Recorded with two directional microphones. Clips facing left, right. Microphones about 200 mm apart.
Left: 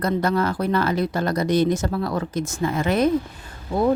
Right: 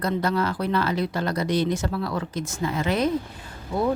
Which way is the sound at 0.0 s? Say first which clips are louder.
Left 3 dB; 45° left (ahead or behind).